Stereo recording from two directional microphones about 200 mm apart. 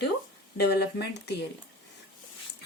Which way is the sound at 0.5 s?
55° left (ahead or behind).